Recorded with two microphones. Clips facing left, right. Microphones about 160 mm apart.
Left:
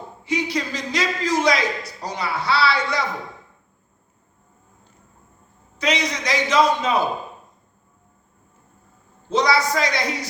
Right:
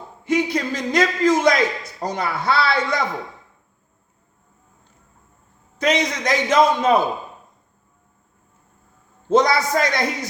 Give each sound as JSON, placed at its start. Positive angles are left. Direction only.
{"t": 0.3, "sound": "a man's voice", "side_deg": -50}
{"t": 5.8, "sound": "a man's voice", "side_deg": -50}
{"t": 9.3, "sound": "a man's voice", "side_deg": -50}